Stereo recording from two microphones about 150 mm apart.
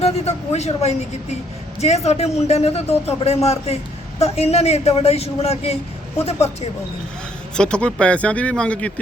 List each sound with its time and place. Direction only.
0.0 s a man's voice: 45° left (ahead or behind)
7.5 s speech: 5° left (ahead or behind)